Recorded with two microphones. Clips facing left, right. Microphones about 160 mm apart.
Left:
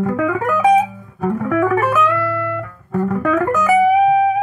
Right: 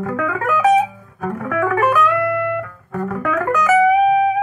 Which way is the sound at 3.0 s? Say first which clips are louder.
Left 4 dB; 10° left (ahead or behind).